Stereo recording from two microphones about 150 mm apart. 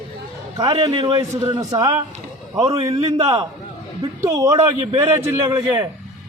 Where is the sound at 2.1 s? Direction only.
45° right (ahead or behind).